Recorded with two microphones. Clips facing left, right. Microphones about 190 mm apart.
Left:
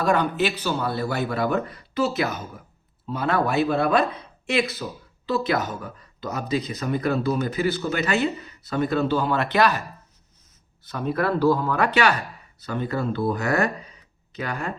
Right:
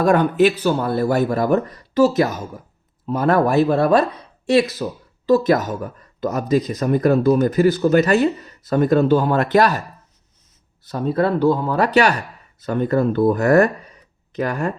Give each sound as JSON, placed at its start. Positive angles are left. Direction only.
{"t": 0.0, "sound": "speech", "side_deg": -50}
{"t": 10.8, "sound": "speech", "side_deg": -30}
{"t": 11.8, "sound": "speech", "side_deg": -40}